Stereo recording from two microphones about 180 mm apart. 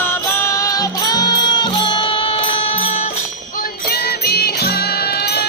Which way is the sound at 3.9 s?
60° left (ahead or behind).